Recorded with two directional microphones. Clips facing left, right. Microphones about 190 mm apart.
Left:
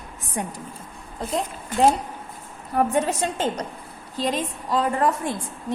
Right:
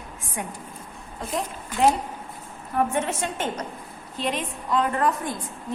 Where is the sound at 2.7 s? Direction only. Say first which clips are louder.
Left 3 dB; 35° left (ahead or behind).